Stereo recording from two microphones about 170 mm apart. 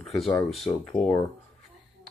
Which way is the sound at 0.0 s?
Centre (ahead or behind).